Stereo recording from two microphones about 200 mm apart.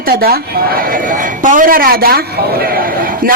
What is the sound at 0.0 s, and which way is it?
A man's voice, 50° right (ahead or behind).